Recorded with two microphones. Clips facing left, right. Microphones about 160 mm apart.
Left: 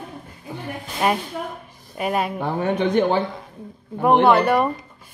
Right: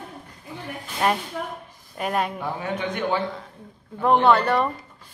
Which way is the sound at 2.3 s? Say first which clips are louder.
Left 6 dB; 65° left (ahead or behind).